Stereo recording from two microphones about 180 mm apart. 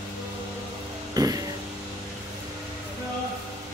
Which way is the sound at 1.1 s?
20° right (ahead or behind).